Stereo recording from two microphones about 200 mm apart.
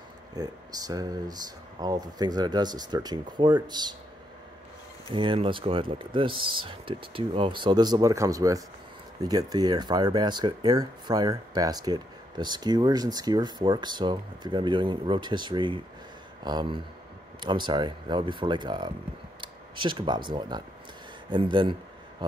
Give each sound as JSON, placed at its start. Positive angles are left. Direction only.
{"t": 0.4, "sound": "speech", "side_deg": -20}
{"t": 5.1, "sound": "speech", "side_deg": -25}